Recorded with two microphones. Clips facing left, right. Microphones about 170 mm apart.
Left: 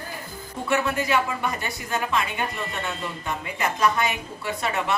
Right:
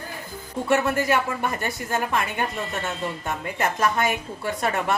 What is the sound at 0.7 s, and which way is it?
A woman's voice, 50° right (ahead or behind).